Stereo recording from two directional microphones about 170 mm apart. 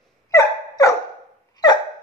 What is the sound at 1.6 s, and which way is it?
Hiccup, 25° left (ahead or behind).